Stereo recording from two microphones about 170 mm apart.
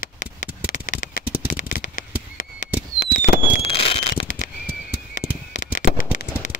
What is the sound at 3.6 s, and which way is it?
Fireworks, 35° left (ahead or behind).